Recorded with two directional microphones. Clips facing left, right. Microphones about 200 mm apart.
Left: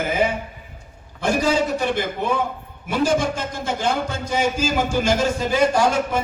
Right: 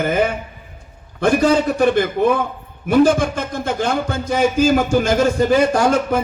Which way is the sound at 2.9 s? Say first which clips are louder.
Right 6 dB; 55° right (ahead or behind).